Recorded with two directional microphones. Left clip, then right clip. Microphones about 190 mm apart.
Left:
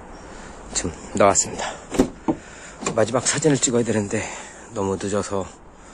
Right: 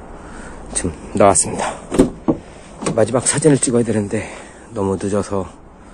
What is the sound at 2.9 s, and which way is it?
Speech, centre (ahead or behind).